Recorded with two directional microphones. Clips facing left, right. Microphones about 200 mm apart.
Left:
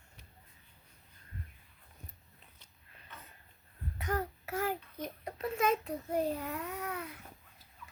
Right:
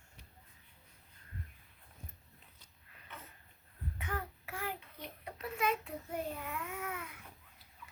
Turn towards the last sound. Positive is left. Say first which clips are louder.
# left 3 dB
turn(degrees=35)  # may be behind; listen again after turning